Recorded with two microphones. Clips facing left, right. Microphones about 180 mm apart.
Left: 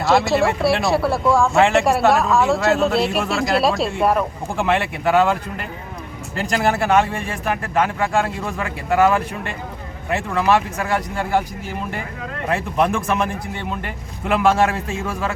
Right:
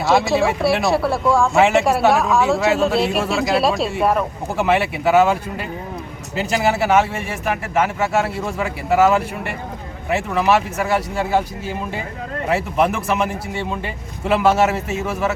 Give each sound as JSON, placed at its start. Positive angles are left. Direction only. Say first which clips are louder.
{"t": 0.0, "sound": "a man's voice", "louder": "even", "side_deg": 0}
{"t": 14.8, "sound": "speech", "louder": "right 2 dB", "side_deg": -20}